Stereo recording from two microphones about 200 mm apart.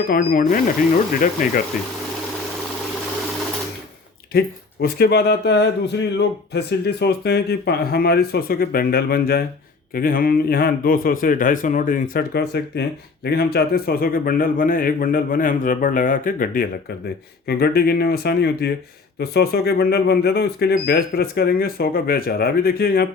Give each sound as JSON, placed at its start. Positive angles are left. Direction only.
{"t": 0.1, "sound": "speech", "side_deg": 45}
{"t": 4.3, "sound": "speech", "side_deg": 50}